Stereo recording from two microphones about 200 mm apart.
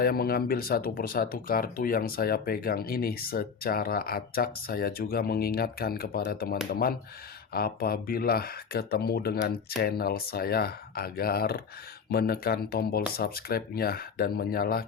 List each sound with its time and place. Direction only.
0.0 s speech: 50° left (ahead or behind)